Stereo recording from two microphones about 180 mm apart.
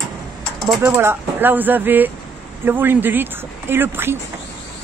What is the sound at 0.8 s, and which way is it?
Speech, 10° right (ahead or behind).